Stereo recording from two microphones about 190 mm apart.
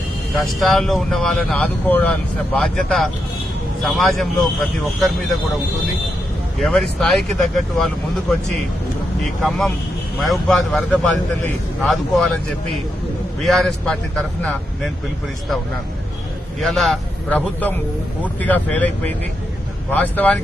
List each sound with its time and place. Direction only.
0.3 s speech: centre (ahead or behind)
6.6 s speech: centre (ahead or behind)
9.2 s speech: centre (ahead or behind)
13.4 s speech: centre (ahead or behind)
16.6 s speech: centre (ahead or behind)